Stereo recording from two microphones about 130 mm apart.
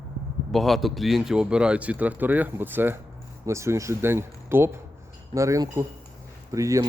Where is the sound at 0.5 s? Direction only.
Centre (ahead or behind).